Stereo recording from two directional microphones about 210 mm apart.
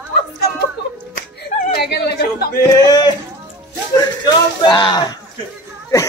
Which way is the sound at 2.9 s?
20° left (ahead or behind).